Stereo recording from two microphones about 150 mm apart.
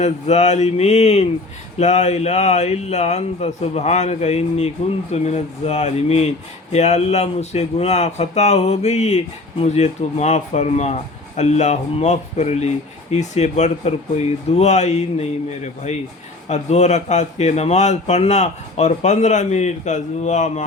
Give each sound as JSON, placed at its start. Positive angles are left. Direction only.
{"t": 0.0, "sound": "speech", "side_deg": 50}